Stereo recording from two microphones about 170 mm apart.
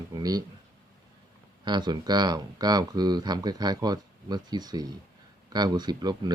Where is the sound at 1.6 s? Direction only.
25° right (ahead or behind).